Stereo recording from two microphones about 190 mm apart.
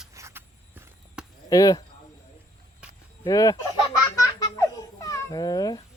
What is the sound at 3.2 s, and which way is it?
Speech, 20° left (ahead or behind).